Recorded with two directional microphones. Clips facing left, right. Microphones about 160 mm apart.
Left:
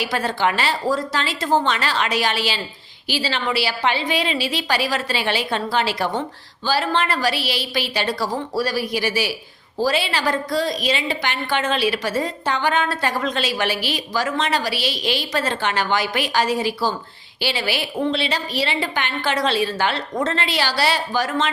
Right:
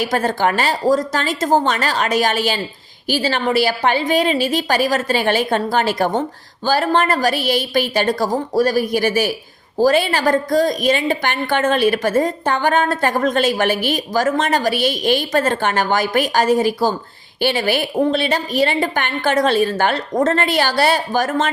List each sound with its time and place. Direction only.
0.0 s a woman's voice: 45° right (ahead or behind)